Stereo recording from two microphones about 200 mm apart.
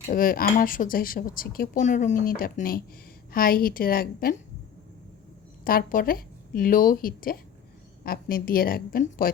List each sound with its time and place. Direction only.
0.1 s speech: 45° left (ahead or behind)
5.6 s speech: 45° left (ahead or behind)